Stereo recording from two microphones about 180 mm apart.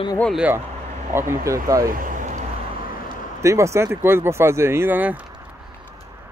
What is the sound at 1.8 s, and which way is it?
Vehicle, 50° right (ahead or behind).